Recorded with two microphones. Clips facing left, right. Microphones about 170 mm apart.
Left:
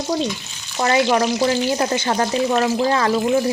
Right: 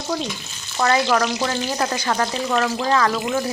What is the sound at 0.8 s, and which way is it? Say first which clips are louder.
Frying: left 2 dB; 20° left (ahead or behind).